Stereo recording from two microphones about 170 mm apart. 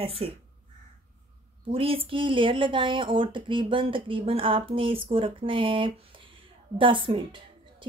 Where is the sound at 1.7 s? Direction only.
35° right (ahead or behind).